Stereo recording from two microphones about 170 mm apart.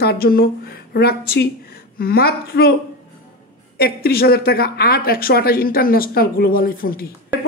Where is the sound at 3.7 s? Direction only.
65° left (ahead or behind).